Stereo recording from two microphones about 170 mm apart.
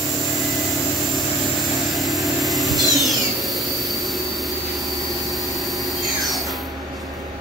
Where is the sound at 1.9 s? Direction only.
Centre (ahead or behind).